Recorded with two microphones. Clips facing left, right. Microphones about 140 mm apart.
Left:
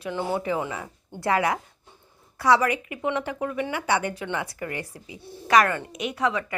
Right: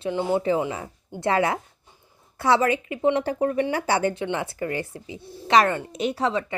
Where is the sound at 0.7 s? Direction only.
30° right (ahead or behind).